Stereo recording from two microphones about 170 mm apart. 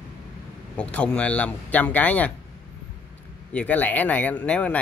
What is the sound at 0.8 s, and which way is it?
Speech, 5° left (ahead or behind).